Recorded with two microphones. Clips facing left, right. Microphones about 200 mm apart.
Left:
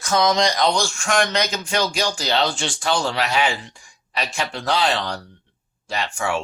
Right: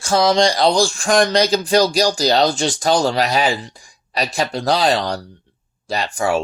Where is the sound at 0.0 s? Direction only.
30° right (ahead or behind).